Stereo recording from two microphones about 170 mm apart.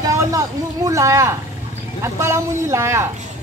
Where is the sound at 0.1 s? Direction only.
20° right (ahead or behind).